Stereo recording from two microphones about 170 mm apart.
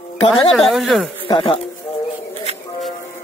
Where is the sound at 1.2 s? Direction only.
30° left (ahead or behind).